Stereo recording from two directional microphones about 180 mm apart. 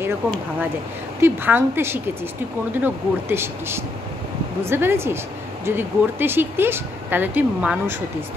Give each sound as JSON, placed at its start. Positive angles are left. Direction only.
{"t": 1.2, "sound": "speech", "side_deg": -10}